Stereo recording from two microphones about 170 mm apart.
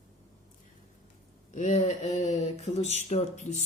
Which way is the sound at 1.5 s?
40° left (ahead or behind).